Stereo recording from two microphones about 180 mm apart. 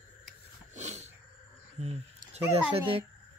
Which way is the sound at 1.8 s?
35° right (ahead or behind).